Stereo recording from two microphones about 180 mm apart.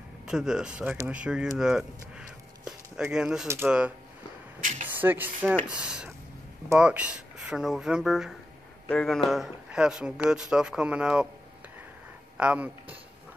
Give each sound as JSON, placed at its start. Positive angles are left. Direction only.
{"t": 0.3, "sound": "speech", "side_deg": -5}
{"t": 4.6, "sound": "speech", "side_deg": -45}
{"t": 4.8, "sound": "speech", "side_deg": -10}
{"t": 12.4, "sound": "speech", "side_deg": -5}